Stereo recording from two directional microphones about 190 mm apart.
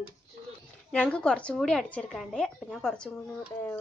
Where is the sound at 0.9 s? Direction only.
5° left (ahead or behind).